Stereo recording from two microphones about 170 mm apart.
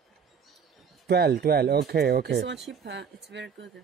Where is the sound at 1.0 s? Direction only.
70° right (ahead or behind); by 3.6 s 90° right.